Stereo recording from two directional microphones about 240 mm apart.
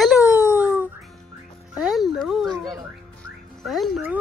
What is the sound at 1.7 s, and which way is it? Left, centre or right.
Speech, centre.